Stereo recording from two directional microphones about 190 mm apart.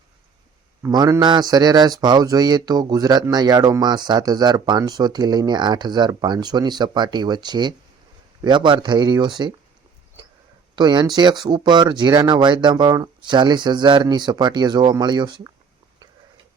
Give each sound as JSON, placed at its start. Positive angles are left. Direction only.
{"t": 0.8, "sound": "a man's voice", "side_deg": -20}
{"t": 10.8, "sound": "a man's voice", "side_deg": -20}